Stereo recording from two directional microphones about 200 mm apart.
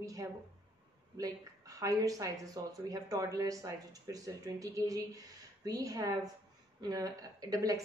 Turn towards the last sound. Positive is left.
turn(degrees=-15)  # may be behind; listen again after turning